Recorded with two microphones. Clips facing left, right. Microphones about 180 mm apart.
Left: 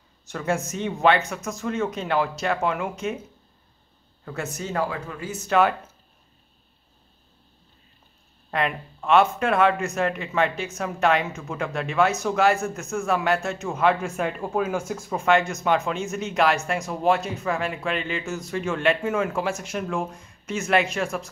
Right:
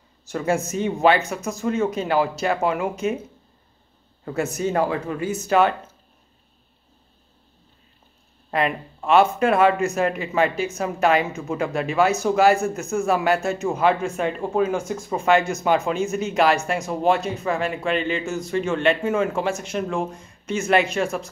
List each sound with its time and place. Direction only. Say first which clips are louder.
0.3 s speech: right 4 dB; 5° right (ahead or behind)
4.4 s speech: right 7 dB; 10° right (ahead or behind)
4.7 s speech: right 3 dB; 25° right (ahead or behind)
5.3 s speech: right 1 dB; centre (ahead or behind)
8.5 s speech: right 3 dB; 5° right (ahead or behind)